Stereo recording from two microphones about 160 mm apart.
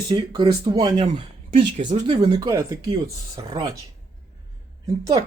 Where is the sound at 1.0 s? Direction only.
40° right (ahead or behind).